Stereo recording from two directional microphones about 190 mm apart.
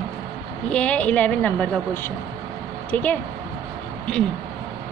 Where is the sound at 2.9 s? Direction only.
10° left (ahead or behind).